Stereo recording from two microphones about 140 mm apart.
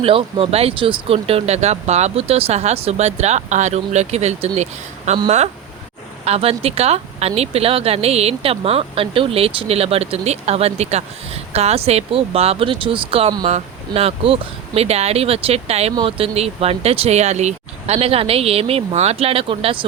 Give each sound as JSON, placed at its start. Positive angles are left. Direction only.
{"t": 0.0, "sound": "speech", "side_deg": -40}
{"t": 6.2, "sound": "speech", "side_deg": -45}